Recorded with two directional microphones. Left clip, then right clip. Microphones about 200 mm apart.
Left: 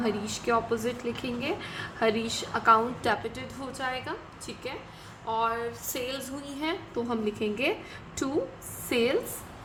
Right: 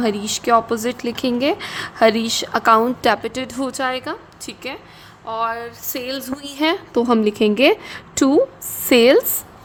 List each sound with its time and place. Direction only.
0.0 s a woman's voice: 50° right (ahead or behind)